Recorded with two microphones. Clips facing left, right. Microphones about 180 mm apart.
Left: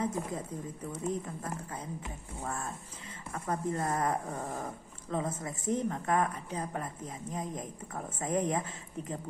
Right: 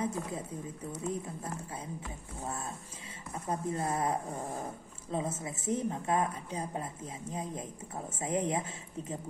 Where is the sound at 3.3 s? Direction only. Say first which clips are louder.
Left 1 dB; 25° right (ahead or behind).